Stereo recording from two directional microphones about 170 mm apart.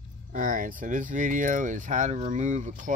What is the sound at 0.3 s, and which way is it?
Speech, 55° right (ahead or behind).